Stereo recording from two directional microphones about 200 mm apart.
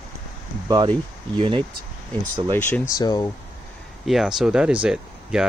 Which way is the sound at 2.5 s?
15° left (ahead or behind).